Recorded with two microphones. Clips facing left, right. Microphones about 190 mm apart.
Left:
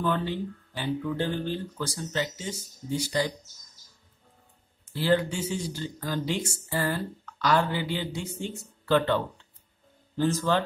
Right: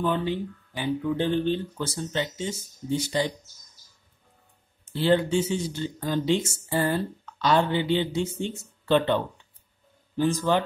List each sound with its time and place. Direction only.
0.0 s speech: 15° right (ahead or behind)
4.9 s speech: 25° right (ahead or behind)